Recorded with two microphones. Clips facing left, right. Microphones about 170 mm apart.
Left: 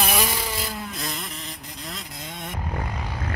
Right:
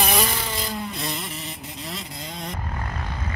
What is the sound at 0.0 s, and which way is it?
Wood, 5° left (ahead or behind).